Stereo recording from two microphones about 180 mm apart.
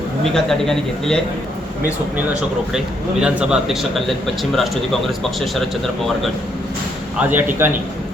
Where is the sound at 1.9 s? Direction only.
5° right (ahead or behind).